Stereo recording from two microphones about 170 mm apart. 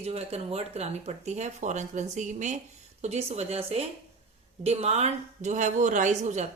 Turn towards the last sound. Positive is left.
turn(degrees=-45)  # may be behind; listen again after turning